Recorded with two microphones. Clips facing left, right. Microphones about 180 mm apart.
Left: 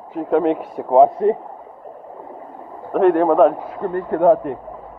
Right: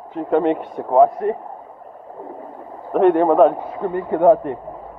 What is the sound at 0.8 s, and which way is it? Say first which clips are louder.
Speech: left 2 dB; 20° left (ahead or behind).